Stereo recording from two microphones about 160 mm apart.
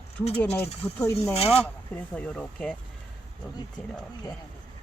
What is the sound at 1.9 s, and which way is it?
Speech, 10° left (ahead or behind).